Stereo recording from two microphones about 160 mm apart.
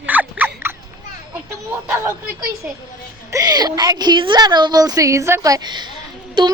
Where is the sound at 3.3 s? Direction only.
25° right (ahead or behind).